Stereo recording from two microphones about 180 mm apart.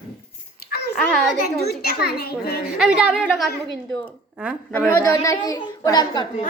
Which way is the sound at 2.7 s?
5° right (ahead or behind).